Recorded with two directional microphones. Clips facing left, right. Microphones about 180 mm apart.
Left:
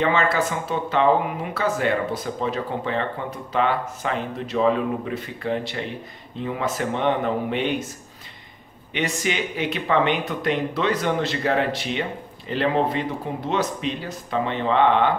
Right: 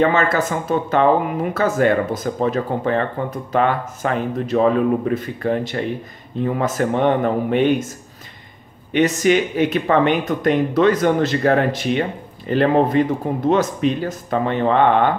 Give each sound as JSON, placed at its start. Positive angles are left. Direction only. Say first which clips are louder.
{"t": 0.0, "sound": "speech", "louder": "right 4 dB", "side_deg": -45}
{"t": 8.9, "sound": "speech", "louder": "right 10 dB", "side_deg": -45}